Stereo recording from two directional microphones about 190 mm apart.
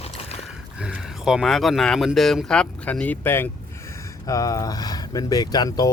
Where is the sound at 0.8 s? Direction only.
5° right (ahead or behind).